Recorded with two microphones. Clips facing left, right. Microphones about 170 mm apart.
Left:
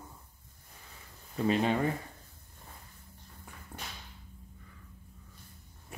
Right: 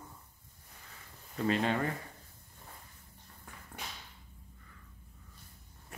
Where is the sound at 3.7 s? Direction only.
10° left (ahead or behind).